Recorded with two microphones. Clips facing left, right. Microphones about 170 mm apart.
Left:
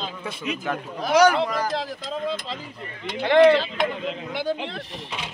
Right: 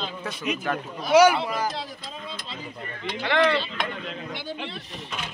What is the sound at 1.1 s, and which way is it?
Speech, 10° right (ahead or behind).